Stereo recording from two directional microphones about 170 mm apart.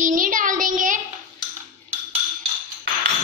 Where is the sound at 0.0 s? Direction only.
50° right (ahead or behind).